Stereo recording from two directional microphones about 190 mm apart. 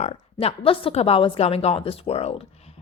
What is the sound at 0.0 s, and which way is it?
A woman's voice, 30° left (ahead or behind).